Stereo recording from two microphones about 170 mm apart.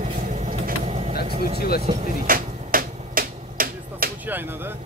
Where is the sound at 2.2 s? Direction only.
55° right (ahead or behind).